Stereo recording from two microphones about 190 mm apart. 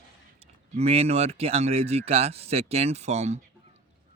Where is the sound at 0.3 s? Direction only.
30° right (ahead or behind).